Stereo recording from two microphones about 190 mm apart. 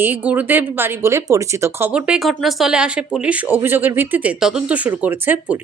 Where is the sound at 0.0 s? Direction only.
10° right (ahead or behind).